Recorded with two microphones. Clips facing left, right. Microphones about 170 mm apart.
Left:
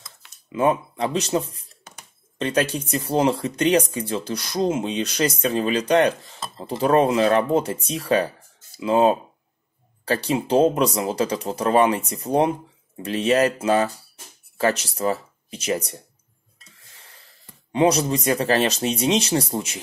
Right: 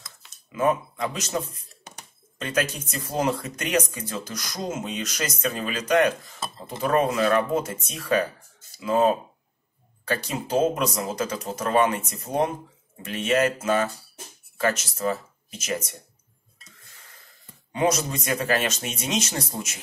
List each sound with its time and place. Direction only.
0.5 s speech: 30° left (ahead or behind)
17.7 s speech: 35° left (ahead or behind)